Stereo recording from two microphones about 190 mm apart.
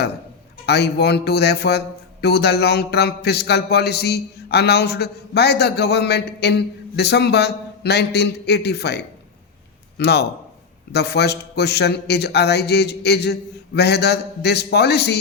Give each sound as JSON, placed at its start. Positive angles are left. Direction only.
{"t": 0.6, "sound": "a man's voice", "side_deg": 60}
{"t": 10.0, "sound": "a man's voice", "side_deg": 60}